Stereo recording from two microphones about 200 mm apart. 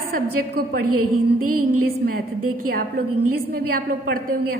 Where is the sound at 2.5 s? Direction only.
45° right (ahead or behind).